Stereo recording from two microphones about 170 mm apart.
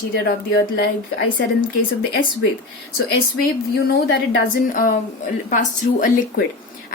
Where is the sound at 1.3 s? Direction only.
60° left (ahead or behind).